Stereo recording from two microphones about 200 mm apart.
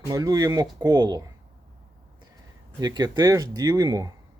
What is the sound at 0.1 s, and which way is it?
Speech, 20° right (ahead or behind).